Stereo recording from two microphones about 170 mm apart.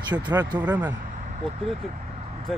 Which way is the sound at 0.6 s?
10° right (ahead or behind).